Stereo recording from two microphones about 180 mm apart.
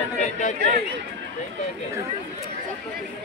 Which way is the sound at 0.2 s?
45° left (ahead or behind).